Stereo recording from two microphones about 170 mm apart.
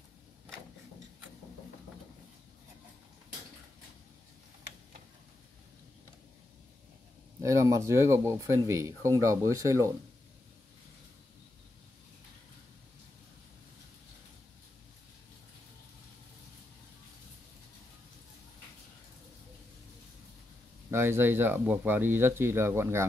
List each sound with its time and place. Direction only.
7.4 s speech: 20° right (ahead or behind)
20.9 s speech: 15° right (ahead or behind)